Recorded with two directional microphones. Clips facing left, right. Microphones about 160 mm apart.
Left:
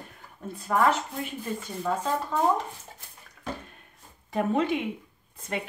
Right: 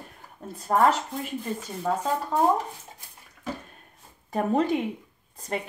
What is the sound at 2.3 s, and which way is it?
Speech, 35° right (ahead or behind).